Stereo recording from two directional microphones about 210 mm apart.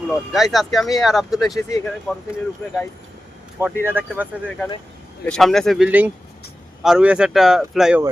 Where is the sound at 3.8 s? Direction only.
10° right (ahead or behind).